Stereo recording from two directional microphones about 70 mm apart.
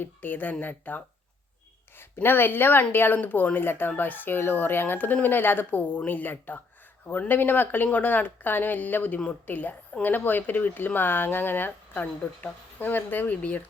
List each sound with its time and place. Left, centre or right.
0.0 s speech: left